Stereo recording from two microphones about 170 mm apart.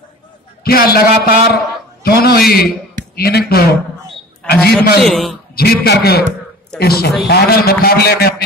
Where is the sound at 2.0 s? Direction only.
65° left (ahead or behind).